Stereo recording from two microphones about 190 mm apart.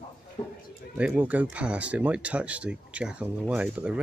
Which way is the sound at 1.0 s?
5° right (ahead or behind).